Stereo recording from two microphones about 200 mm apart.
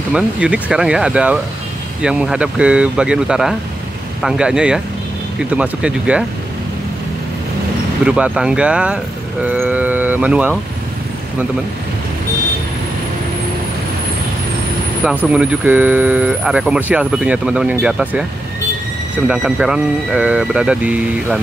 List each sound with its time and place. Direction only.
0.1 s speech: 5° right (ahead or behind)
8.0 s speech: 5° right (ahead or behind)
15.0 s speech: 5° right (ahead or behind)